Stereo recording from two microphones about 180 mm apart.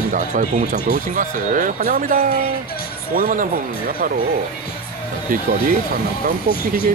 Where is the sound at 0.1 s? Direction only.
45° right (ahead or behind).